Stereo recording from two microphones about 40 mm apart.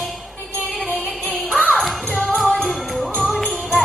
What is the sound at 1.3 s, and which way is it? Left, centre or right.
Music, centre.